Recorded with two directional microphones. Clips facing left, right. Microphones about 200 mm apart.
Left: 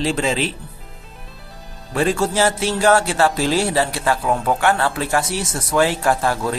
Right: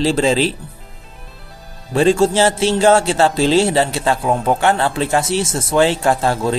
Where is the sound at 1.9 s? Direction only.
25° right (ahead or behind).